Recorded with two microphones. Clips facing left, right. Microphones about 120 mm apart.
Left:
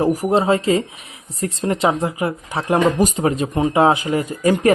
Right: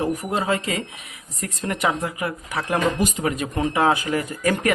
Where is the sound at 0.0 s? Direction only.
30° left (ahead or behind).